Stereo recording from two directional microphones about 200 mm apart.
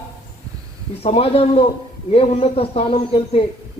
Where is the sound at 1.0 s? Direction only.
30° left (ahead or behind).